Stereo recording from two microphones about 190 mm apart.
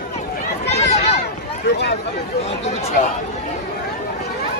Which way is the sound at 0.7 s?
35° left (ahead or behind).